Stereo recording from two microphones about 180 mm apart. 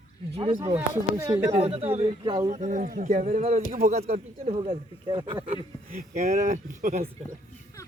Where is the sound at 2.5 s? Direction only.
45° right (ahead or behind).